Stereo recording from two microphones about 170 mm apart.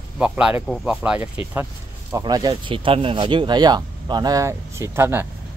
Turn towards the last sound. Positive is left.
turn(degrees=-15)  # may be behind; listen again after turning